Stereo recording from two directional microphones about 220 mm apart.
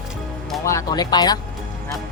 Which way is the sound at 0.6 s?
15° left (ahead or behind).